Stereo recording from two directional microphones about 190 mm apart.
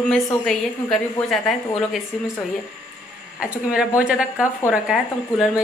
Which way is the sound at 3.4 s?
5° right (ahead or behind).